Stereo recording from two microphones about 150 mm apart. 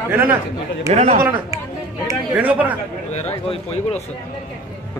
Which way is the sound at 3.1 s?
45° left (ahead or behind).